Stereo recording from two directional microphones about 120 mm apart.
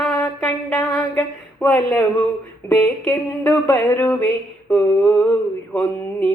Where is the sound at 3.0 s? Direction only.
15° left (ahead or behind).